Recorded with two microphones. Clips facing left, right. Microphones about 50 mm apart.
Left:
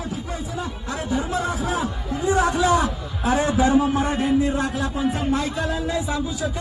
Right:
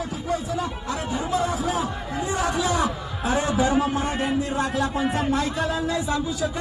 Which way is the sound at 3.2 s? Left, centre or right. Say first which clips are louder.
Left 3 dB; left.